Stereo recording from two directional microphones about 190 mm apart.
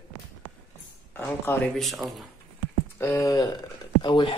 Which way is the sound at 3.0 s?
15° left (ahead or behind).